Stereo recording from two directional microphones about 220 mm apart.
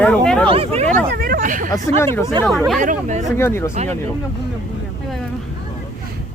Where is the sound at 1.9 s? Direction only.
10° left (ahead or behind).